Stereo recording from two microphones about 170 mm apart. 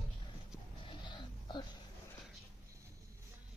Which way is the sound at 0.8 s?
25° left (ahead or behind).